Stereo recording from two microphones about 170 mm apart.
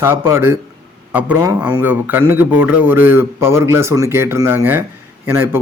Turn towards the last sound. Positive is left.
turn(degrees=-15)  # may be behind; listen again after turning